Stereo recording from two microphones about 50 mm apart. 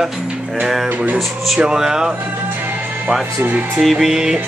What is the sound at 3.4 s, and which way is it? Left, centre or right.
Speech, right.